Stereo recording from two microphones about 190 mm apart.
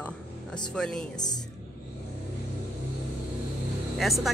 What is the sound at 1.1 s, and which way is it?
Speech, 20° left (ahead or behind).